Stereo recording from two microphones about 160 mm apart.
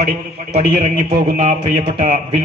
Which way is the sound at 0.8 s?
55° right (ahead or behind).